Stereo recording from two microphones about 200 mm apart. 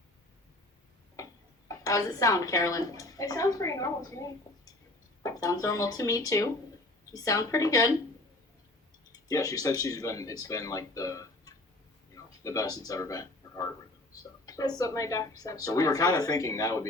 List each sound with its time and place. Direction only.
1.1 s a woman's voice: 15° left (ahead or behind)
9.1 s a woman's voice: 15° left (ahead or behind)